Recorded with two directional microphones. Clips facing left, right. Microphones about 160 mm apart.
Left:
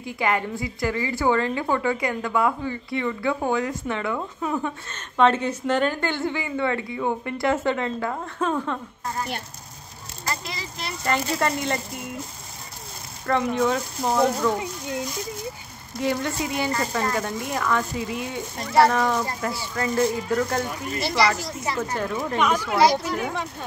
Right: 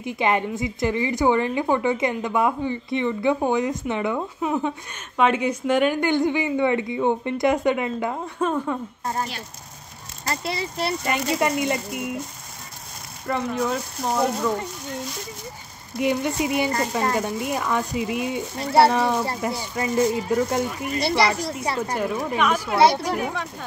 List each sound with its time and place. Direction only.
0.0 s a woman's voice: 20° right (ahead or behind)
10.2 s speech: 35° right (ahead or behind)
11.1 s a woman's voice: 15° right (ahead or behind)
13.3 s speech: centre (ahead or behind)
16.0 s a woman's voice: 15° right (ahead or behind)
18.6 s speech: 30° right (ahead or behind)
18.9 s a woman's voice: 15° right (ahead or behind)
21.1 s a woman's voice: 30° right (ahead or behind)
21.9 s a woman's voice: 10° right (ahead or behind)
22.8 s a woman's voice: 30° right (ahead or behind)